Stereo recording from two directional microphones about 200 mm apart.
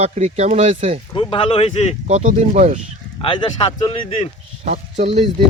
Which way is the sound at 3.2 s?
25° left (ahead or behind).